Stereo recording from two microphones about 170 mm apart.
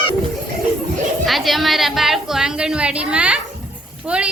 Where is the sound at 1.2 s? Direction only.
Centre (ahead or behind).